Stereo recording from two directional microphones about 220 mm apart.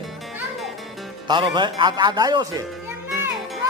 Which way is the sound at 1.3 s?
20° right (ahead or behind).